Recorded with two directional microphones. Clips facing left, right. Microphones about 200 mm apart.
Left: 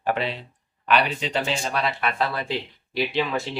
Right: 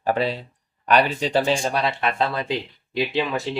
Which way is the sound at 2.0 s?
25° right (ahead or behind).